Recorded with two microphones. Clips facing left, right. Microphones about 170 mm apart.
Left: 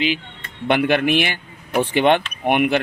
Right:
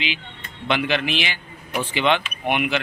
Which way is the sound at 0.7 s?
50° left (ahead or behind).